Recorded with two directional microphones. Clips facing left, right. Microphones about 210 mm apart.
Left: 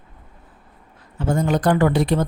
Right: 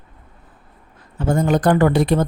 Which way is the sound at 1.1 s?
50° right (ahead or behind).